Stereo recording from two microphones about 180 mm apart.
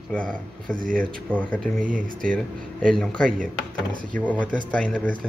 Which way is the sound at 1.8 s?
50° right (ahead or behind).